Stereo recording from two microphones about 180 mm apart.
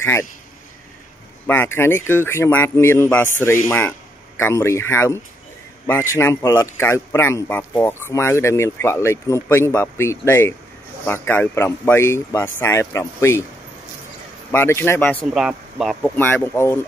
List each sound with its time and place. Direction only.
0.0 s a man's voice: 15° left (ahead or behind)
1.5 s a man's voice: 10° left (ahead or behind)
14.5 s a man's voice: 10° left (ahead or behind)
15.2 s speech: 5° right (ahead or behind)
16.2 s a man's voice: 10° left (ahead or behind)